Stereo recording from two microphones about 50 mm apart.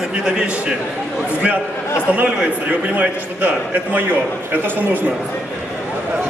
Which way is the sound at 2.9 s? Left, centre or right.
Right.